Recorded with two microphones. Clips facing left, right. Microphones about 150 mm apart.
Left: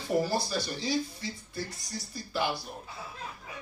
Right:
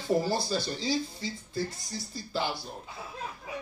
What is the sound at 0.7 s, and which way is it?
Speech, 25° right (ahead or behind).